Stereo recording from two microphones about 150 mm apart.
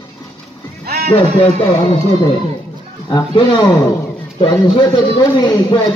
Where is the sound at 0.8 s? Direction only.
90° right.